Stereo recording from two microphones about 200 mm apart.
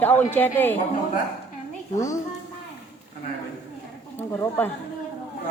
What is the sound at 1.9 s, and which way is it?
Speech, 15° left (ahead or behind).